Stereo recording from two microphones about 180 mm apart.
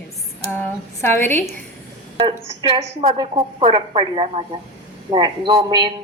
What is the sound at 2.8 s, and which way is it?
A woman's voice, 35° right (ahead or behind).